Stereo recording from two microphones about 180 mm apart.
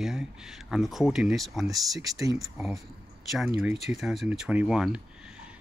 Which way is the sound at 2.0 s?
20° right (ahead or behind).